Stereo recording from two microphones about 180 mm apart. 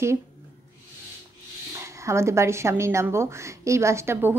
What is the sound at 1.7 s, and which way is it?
Speech, 15° right (ahead or behind).